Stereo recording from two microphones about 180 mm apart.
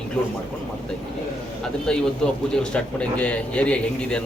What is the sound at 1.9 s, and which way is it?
A man's voice, 5° left (ahead or behind).